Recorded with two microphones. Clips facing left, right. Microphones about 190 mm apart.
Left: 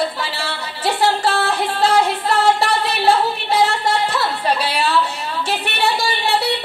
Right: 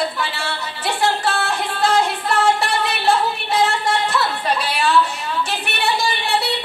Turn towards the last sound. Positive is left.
turn(degrees=35)  # may be behind; listen again after turning